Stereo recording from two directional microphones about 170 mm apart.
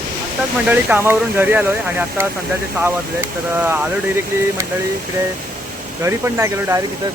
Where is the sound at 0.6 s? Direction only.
10° right (ahead or behind).